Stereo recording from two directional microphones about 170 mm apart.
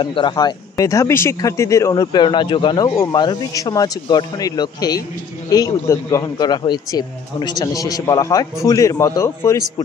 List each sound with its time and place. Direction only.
0.0 s speech: 30° left (ahead or behind)